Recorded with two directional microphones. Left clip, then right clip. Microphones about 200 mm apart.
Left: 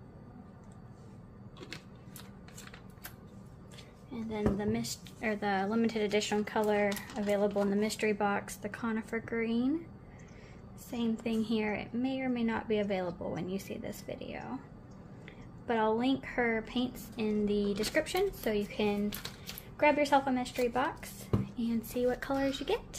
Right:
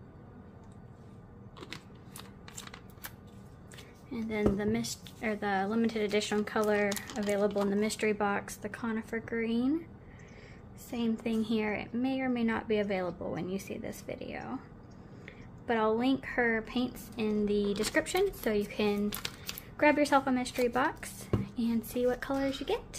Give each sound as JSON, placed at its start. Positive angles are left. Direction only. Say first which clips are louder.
{"t": 4.1, "sound": "a woman's voice", "louder": "right 3 dB", "side_deg": -25}
{"t": 10.9, "sound": "a woman's voice", "louder": "right 1 dB", "side_deg": -5}
{"t": 15.6, "sound": "a woman's voice", "louder": "right 1 dB", "side_deg": -10}